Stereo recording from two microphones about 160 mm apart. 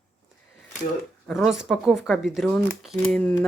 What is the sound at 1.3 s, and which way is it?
Speech, centre (ahead or behind).